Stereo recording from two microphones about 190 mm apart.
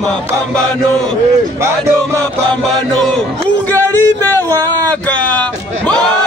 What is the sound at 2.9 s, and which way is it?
Music, 5° left (ahead or behind).